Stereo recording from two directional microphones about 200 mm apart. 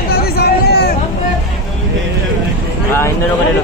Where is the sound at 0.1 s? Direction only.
50° left (ahead or behind).